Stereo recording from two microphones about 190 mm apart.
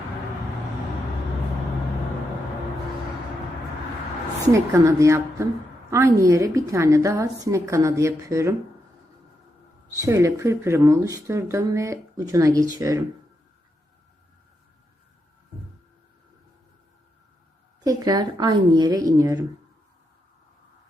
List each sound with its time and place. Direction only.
4.5 s speech: 15° right (ahead or behind)
9.9 s speech: 20° right (ahead or behind)
17.8 s speech: 20° right (ahead or behind)